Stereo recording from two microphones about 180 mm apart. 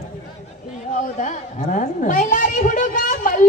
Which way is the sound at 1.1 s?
45° left (ahead or behind).